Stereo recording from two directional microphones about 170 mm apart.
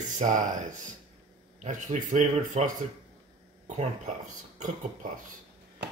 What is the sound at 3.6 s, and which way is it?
Speech, 45° right (ahead or behind).